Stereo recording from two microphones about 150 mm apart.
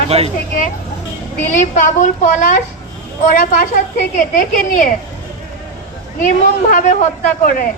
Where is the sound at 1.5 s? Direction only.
55° left (ahead or behind).